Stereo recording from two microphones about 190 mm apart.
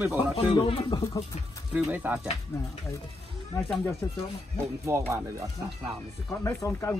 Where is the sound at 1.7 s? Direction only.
5° right (ahead or behind).